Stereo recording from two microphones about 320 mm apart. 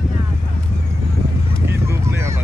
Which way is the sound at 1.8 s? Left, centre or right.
Centre.